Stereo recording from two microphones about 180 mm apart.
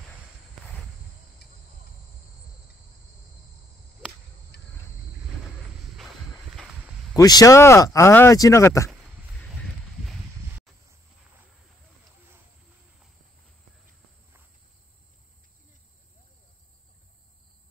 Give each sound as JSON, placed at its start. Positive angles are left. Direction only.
{"t": 1.4, "sound": "cricket", "side_deg": 65}
{"t": 4.5, "sound": "cricket", "side_deg": 70}
{"t": 7.2, "sound": "speech", "side_deg": 20}